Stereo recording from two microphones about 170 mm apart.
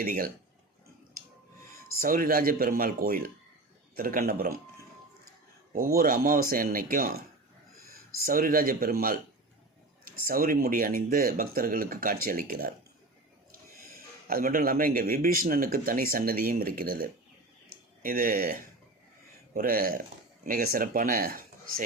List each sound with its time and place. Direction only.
0.0 s speech: 60° right (ahead or behind)
2.0 s speech: 60° right (ahead or behind)
5.7 s speech: 60° right (ahead or behind)
8.2 s speech: 60° right (ahead or behind)
14.3 s speech: 55° right (ahead or behind)
17.7 s a sound: 60° right (ahead or behind)
19.5 s speech: 60° right (ahead or behind)